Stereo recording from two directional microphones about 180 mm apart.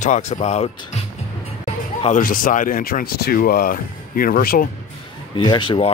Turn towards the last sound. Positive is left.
turn(degrees=30)  # may be behind; listen again after turning